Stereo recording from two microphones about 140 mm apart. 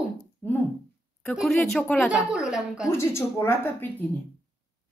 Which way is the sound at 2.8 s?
20° left (ahead or behind).